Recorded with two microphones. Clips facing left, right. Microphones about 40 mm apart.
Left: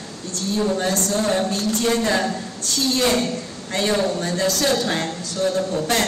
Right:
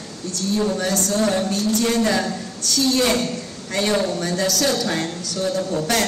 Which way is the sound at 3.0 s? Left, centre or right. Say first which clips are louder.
Even; left.